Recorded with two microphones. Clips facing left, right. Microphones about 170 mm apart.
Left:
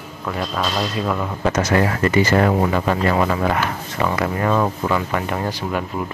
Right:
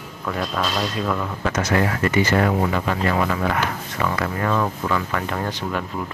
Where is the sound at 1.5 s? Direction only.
35° left (ahead or behind).